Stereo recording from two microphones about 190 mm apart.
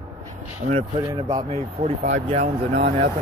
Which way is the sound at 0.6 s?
50° right (ahead or behind).